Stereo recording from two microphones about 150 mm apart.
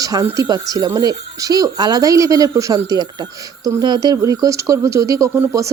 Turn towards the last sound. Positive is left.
turn(degrees=-20)  # may be behind; listen again after turning